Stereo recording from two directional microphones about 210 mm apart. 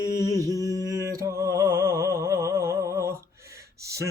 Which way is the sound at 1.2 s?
15° right (ahead or behind).